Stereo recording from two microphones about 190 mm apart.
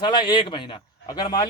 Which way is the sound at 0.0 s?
20° left (ahead or behind).